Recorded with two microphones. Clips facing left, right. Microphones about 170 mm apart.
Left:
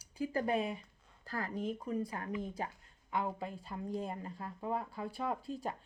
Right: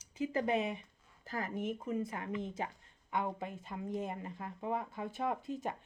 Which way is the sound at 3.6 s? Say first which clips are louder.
Even; 20° right (ahead or behind).